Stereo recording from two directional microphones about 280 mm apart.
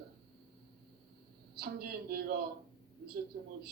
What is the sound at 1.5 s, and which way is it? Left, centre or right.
Speech, right.